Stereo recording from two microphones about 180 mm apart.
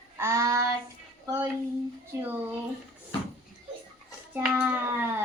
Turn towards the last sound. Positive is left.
turn(degrees=-10)  # may be behind; listen again after turning